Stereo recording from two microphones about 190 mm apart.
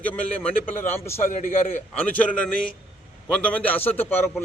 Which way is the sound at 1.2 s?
40° left (ahead or behind).